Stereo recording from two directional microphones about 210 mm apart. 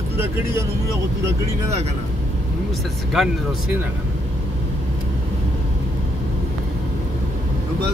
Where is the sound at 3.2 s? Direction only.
Centre (ahead or behind).